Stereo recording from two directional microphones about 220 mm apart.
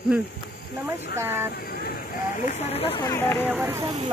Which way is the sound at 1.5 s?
45° left (ahead or behind).